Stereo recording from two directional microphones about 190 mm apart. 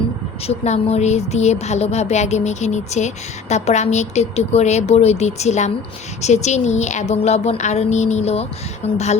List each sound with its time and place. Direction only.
0.4 s speech: 35° left (ahead or behind)